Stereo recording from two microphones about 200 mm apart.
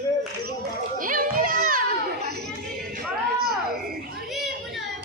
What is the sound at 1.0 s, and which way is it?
Children playing, 40° right (ahead or behind).